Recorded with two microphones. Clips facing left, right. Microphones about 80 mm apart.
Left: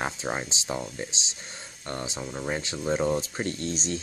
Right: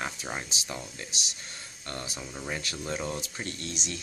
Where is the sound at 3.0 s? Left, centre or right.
Left.